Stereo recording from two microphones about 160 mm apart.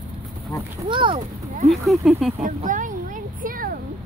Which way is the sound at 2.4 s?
55° right (ahead or behind).